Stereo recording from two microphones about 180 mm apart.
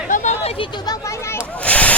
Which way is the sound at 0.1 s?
40° left (ahead or behind).